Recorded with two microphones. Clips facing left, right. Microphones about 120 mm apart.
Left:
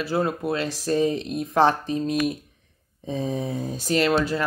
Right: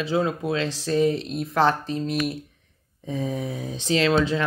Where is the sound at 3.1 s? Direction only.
25° left (ahead or behind).